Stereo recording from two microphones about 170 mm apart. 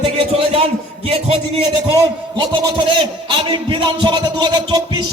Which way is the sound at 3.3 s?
30° right (ahead or behind).